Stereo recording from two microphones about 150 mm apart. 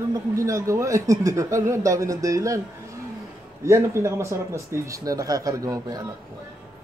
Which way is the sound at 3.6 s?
20° right (ahead or behind).